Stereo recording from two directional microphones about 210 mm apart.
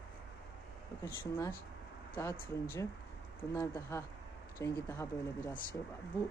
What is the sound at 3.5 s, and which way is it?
Speech, 15° left (ahead or behind).